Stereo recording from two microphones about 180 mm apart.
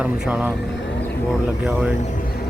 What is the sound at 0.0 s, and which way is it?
Speech, 5° right (ahead or behind).